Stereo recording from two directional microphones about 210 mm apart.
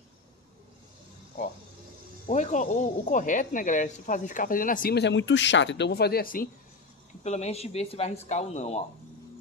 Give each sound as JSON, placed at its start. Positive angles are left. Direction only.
{"t": 2.2, "sound": "speech", "side_deg": 35}
{"t": 7.2, "sound": "speech", "side_deg": 30}